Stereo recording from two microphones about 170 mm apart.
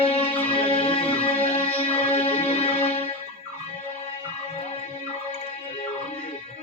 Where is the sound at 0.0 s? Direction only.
35° left (ahead or behind).